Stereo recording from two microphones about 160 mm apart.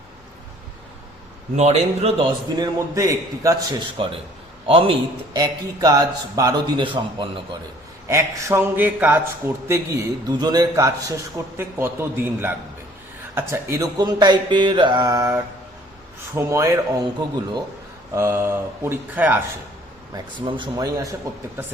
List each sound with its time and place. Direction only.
1.5 s a man's voice: 45° right (ahead or behind)
2.6 s a man's voice: 20° right (ahead or behind)
3.9 s a man's voice: 35° right (ahead or behind)
8.0 s a man's voice: 20° right (ahead or behind)
18.1 s speech: 15° right (ahead or behind)
20.1 s a man's voice: 30° right (ahead or behind)